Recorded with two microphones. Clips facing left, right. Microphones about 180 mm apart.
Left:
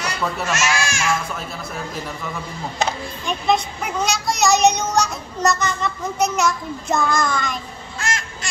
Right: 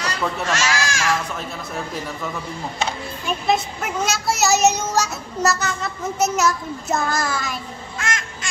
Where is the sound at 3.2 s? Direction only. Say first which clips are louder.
Left 1 dB; 5° right (ahead or behind).